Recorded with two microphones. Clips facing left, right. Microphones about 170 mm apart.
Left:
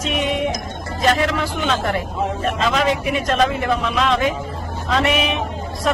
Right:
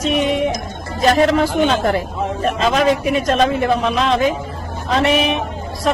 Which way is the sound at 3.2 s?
40° right (ahead or behind).